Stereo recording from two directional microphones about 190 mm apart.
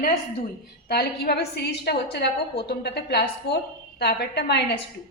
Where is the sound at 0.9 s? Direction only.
55° left (ahead or behind).